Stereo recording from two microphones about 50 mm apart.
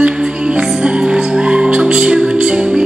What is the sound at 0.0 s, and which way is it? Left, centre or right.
Music, right.